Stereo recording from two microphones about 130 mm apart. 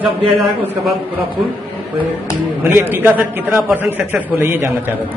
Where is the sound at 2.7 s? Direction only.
15° right (ahead or behind).